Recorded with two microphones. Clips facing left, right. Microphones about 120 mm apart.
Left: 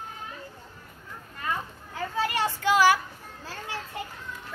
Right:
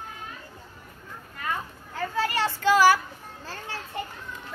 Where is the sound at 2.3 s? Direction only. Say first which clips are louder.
Right 2 dB; 15° left (ahead or behind).